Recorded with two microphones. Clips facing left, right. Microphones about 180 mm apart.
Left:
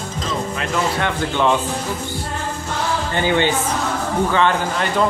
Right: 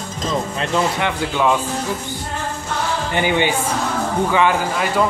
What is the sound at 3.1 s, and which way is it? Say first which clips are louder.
Speech: even; 15° right (ahead or behind).